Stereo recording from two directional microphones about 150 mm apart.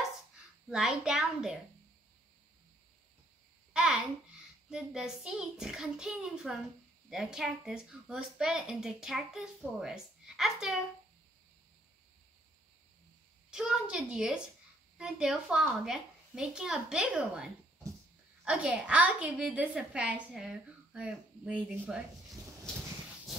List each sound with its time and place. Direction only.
0.7 s speech: 5° right (ahead or behind)
3.7 s a sound: centre (ahead or behind)
4.6 s speech: 5° right (ahead or behind)
13.5 s a woman's voice: 5° right (ahead or behind)